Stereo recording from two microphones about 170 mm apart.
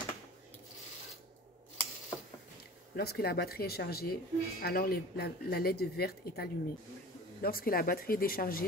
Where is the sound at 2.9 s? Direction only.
65° left (ahead or behind).